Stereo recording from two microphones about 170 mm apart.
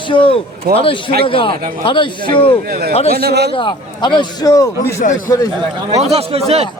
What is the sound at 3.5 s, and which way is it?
A man's voice, 25° left (ahead or behind).